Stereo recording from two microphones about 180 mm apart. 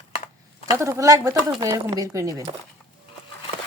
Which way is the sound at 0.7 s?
15° right (ahead or behind).